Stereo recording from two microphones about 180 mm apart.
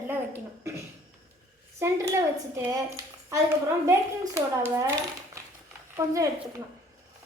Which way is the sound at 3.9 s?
15° right (ahead or behind).